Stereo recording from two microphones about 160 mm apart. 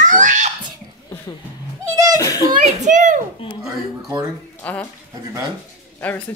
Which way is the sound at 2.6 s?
50° right (ahead or behind).